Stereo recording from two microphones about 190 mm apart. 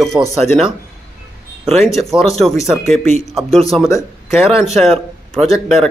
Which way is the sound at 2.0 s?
Centre (ahead or behind).